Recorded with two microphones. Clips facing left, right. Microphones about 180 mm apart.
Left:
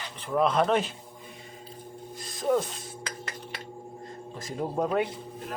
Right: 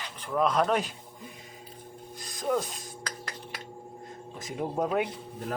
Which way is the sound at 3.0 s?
5° left (ahead or behind).